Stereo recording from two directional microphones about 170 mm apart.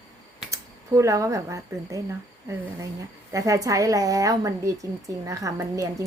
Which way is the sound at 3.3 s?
20° right (ahead or behind).